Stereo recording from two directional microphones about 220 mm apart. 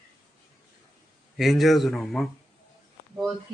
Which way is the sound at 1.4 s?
Centre (ahead or behind).